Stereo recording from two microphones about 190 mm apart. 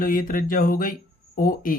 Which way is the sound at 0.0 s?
45° left (ahead or behind).